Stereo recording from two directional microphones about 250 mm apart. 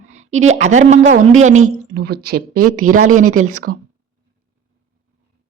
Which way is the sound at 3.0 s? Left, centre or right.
Right.